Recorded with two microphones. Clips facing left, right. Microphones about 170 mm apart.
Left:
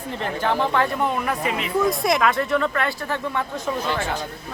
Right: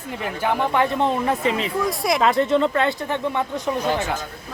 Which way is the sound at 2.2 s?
25° right (ahead or behind).